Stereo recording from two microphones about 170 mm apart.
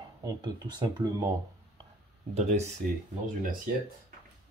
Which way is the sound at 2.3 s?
40° right (ahead or behind).